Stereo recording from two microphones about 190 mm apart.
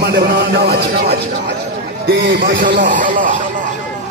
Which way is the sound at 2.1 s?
55° right (ahead or behind).